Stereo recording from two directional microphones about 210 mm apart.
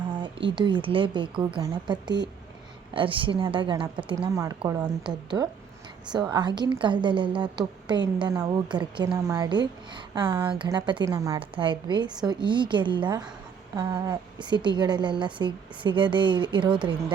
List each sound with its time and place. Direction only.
0.1 s a woman's voice: 25° right (ahead or behind)